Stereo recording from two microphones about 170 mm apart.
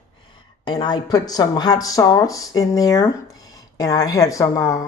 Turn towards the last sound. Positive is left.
turn(degrees=20)  # may be behind; listen again after turning